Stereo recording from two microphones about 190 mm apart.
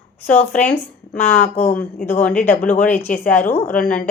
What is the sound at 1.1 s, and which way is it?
Speech, 40° left (ahead or behind).